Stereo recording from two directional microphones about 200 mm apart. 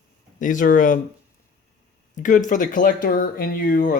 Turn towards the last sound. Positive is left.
turn(degrees=45)  # may be behind; listen again after turning